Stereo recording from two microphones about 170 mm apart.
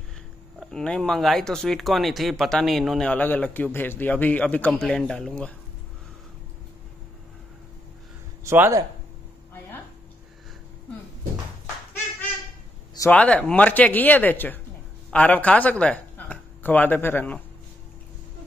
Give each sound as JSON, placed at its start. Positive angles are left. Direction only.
{"t": 0.6, "sound": "speech", "side_deg": 5}
{"t": 8.5, "sound": "speech", "side_deg": -15}
{"t": 13.1, "sound": "speech", "side_deg": 10}